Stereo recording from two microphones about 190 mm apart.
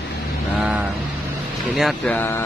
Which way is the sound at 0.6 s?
10° right (ahead or behind).